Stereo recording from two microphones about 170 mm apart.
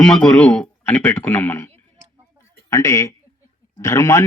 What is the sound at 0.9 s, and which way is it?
A man's voice, 15° left (ahead or behind).